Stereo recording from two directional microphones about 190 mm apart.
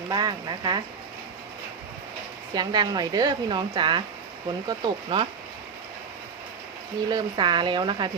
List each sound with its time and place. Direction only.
0.1 s speech: 20° right (ahead or behind)
2.6 s speech: 20° right (ahead or behind)
7.1 s speech: 20° right (ahead or behind)